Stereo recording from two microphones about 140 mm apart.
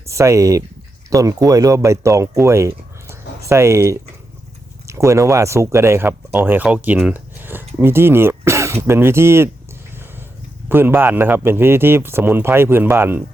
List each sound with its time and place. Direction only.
0.0 s speech: 20° right (ahead or behind)
10.7 s a man's voice: 15° right (ahead or behind)